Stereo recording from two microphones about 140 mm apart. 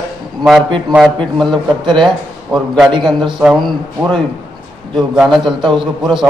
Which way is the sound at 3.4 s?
Centre (ahead or behind).